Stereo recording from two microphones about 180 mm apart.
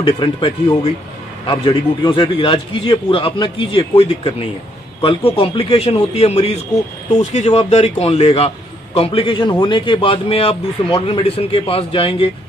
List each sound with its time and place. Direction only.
0.0 s a man's voice: 30° left (ahead or behind)
1.5 s a man's voice: 25° left (ahead or behind)